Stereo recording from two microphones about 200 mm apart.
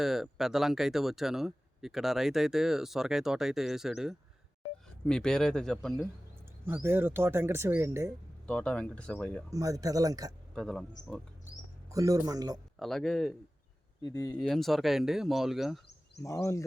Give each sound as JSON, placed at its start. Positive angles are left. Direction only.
{"t": 0.0, "sound": "speech", "side_deg": 0}
{"t": 6.7, "sound": "speech", "side_deg": -10}
{"t": 8.4, "sound": "speech", "side_deg": 5}
{"t": 9.5, "sound": "speech", "side_deg": -15}
{"t": 10.5, "sound": "speech", "side_deg": 0}
{"t": 11.9, "sound": "speech", "side_deg": -15}
{"t": 12.8, "sound": "speech", "side_deg": 0}
{"t": 14.0, "sound": "speech", "side_deg": 20}
{"t": 14.3, "sound": "speech", "side_deg": 5}
{"t": 16.2, "sound": "speech", "side_deg": 15}